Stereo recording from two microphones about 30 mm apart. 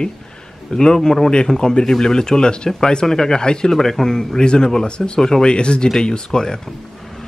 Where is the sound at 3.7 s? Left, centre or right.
Centre.